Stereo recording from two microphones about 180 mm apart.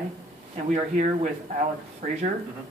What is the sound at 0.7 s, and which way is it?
Speech, 40° right (ahead or behind).